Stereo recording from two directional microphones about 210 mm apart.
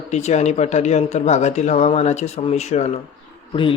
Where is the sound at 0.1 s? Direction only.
30° left (ahead or behind).